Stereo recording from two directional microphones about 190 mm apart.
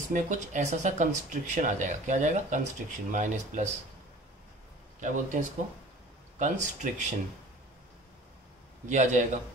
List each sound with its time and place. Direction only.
0.1 s speech: 40° right (ahead or behind)
5.0 s speech: 40° right (ahead or behind)
8.8 s speech: 40° right (ahead or behind)